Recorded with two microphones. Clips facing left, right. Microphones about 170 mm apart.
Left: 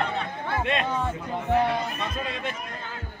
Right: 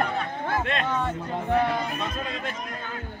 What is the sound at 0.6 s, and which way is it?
Speech, 10° left (ahead or behind).